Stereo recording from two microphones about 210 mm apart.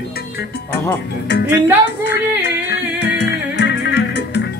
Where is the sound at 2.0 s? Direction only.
50° left (ahead or behind).